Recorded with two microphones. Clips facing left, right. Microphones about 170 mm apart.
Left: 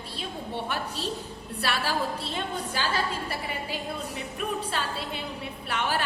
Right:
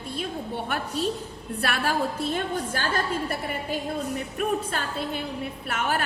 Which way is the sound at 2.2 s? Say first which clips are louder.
Right 5 dB; 50° right (ahead or behind).